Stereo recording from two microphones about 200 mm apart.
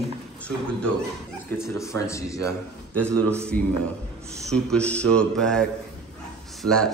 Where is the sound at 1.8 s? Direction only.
15° left (ahead or behind).